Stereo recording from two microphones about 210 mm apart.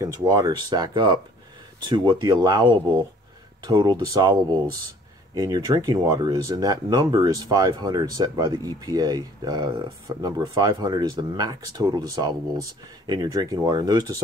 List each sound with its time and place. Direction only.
0.0 s speech: 15° right (ahead or behind)